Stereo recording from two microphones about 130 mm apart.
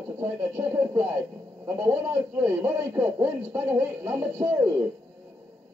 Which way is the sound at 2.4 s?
20° right (ahead or behind).